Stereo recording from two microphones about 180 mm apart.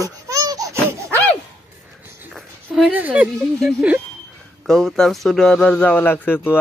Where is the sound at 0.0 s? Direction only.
20° right (ahead or behind).